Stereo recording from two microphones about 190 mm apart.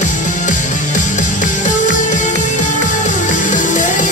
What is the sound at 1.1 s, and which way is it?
Music, 40° left (ahead or behind).